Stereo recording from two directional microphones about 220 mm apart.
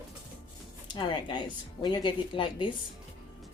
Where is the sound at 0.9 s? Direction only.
20° left (ahead or behind).